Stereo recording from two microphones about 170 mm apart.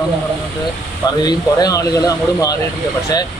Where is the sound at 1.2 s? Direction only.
20° left (ahead or behind).